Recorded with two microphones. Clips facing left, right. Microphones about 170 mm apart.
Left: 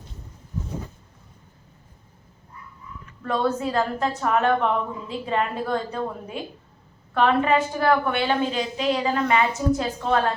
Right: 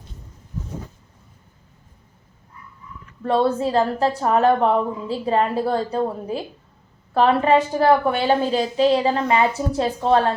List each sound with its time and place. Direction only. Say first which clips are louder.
3.2 s a woman's voice: right 5 dB; 30° right (ahead or behind)